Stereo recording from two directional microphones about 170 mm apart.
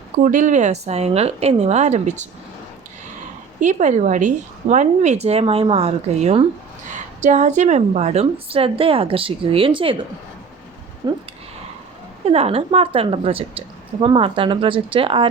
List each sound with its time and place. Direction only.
0.2 s a woman's voice: 50° right (ahead or behind)
3.6 s a woman's voice: 45° right (ahead or behind)
11.0 s speech: 25° right (ahead or behind)
12.2 s a woman's voice: 35° right (ahead or behind)